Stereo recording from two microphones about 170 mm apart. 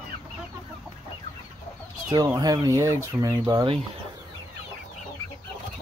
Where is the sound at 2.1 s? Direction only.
20° right (ahead or behind).